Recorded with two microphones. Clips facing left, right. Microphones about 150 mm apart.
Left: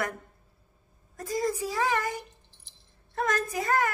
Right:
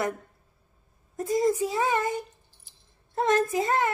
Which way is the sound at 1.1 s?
20° right (ahead or behind).